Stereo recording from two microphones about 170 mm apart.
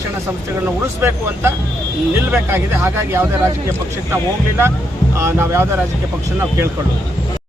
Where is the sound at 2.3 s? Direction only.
15° right (ahead or behind).